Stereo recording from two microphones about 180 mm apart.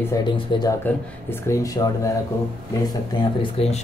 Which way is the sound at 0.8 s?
15° left (ahead or behind).